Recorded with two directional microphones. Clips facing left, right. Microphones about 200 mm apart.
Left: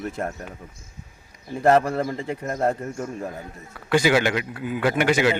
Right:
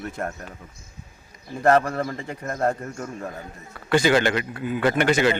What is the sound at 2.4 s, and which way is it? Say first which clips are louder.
Speech: even; 10° left (ahead or behind).